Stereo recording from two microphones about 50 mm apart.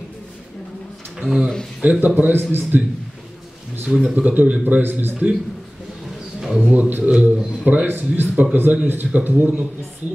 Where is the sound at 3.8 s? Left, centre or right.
Centre.